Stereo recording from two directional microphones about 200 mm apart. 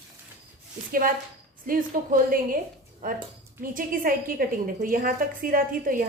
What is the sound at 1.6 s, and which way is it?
A woman's voice, 45° right (ahead or behind).